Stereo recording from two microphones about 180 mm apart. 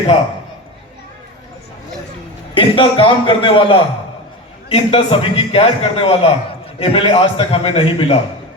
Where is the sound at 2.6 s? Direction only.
30° left (ahead or behind).